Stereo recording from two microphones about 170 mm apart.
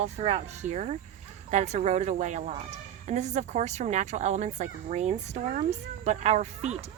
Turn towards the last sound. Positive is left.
turn(degrees=-40)  # may be behind; listen again after turning